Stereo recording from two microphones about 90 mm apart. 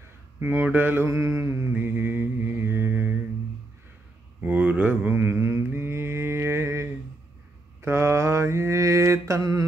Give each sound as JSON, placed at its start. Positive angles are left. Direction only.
{"t": 0.4, "sound": "mantra", "side_deg": -20}
{"t": 4.4, "sound": "mantra", "side_deg": -20}
{"t": 9.4, "sound": "mantra", "side_deg": -45}